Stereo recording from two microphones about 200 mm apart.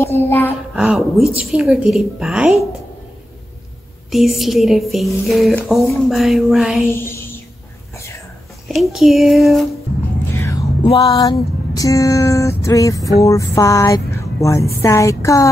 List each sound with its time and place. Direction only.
0.3 s speech: 10° left (ahead or behind)
0.7 s speech: 5° right (ahead or behind)
4.1 s speech: centre (ahead or behind)
6.9 s a sound: 10° left (ahead or behind)
8.6 s speech: centre (ahead or behind)
10.3 s music: 15° left (ahead or behind)
13.2 s speech: 15° left (ahead or behind)